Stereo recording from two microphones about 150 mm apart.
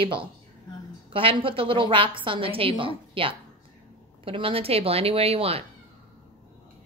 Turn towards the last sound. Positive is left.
turn(degrees=-40)  # may be behind; listen again after turning